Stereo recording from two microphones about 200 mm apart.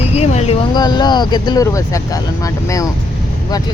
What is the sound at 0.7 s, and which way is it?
Speech, 20° left (ahead or behind).